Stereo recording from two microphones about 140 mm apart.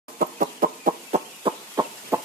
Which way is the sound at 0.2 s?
85° right.